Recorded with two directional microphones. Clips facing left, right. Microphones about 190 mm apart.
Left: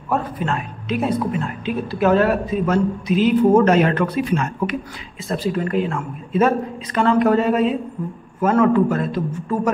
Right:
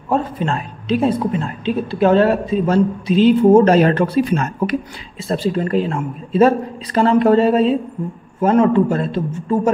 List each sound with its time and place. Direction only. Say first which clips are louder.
0.1 s a woman's voice: right 3 dB; 30° right (ahead or behind)